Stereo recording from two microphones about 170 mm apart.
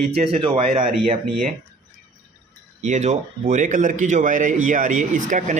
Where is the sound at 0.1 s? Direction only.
35° right (ahead or behind).